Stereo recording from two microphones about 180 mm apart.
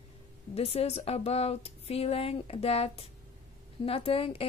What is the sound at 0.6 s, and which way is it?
A woman's voice, 35° left (ahead or behind).